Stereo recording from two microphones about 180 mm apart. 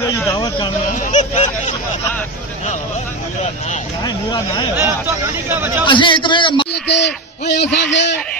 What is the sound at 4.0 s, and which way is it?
Speech, 20° left (ahead or behind).